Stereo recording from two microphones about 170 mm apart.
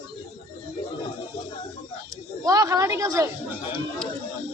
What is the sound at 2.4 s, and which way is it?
Speech, 20° right (ahead or behind).